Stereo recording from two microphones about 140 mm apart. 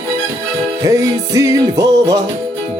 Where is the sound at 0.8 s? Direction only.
25° right (ahead or behind).